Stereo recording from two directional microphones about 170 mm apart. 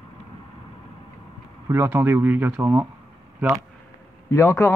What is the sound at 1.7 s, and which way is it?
Speech, 10° right (ahead or behind).